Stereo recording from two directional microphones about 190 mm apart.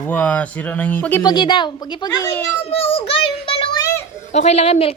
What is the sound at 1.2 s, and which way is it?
A woman's voice, 25° left (ahead or behind).